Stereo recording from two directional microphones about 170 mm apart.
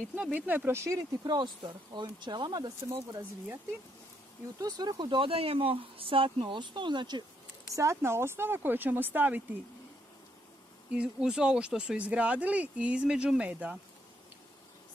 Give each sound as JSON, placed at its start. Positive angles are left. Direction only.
{"t": 0.1, "sound": "speech", "side_deg": -10}
{"t": 4.6, "sound": "speech", "side_deg": -25}
{"t": 11.0, "sound": "speech", "side_deg": -5}